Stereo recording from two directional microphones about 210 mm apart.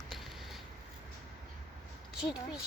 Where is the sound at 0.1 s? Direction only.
Centre (ahead or behind).